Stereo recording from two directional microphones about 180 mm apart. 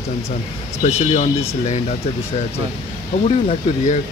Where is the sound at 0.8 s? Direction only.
35° left (ahead or behind).